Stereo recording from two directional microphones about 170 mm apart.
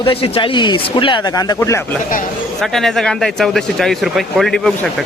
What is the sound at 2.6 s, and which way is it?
Speech, centre (ahead or behind).